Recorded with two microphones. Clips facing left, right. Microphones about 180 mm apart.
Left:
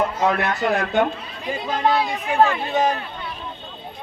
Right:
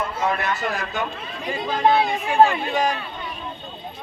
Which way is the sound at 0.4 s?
60° left (ahead or behind).